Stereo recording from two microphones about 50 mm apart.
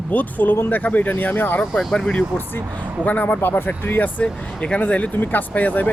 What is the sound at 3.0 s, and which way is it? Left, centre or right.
Speech, left.